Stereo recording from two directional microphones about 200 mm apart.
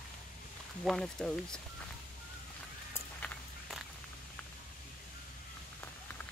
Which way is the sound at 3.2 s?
Centre (ahead or behind).